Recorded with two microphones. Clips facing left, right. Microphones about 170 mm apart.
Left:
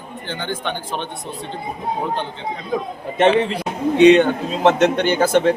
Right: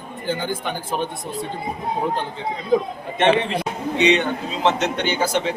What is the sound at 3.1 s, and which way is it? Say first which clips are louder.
A man's voice: left 3 dB; 40° left (ahead or behind).